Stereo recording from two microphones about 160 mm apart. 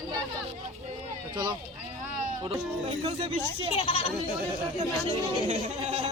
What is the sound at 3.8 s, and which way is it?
Speech, 40° left (ahead or behind).